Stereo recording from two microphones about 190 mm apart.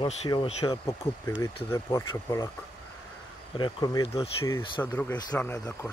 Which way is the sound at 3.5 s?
20° left (ahead or behind).